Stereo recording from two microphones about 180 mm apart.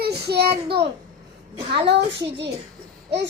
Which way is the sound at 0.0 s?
65° right (ahead or behind).